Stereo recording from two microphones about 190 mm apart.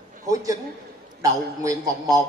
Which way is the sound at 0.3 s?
20° right (ahead or behind).